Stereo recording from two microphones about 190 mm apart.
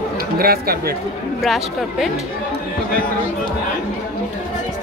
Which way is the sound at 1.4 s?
Centre (ahead or behind).